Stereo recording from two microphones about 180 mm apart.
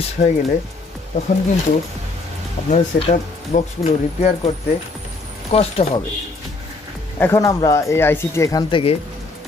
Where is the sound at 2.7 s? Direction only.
40° left (ahead or behind).